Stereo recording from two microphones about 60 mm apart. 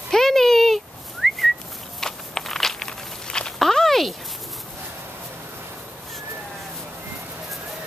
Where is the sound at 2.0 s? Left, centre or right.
Centre.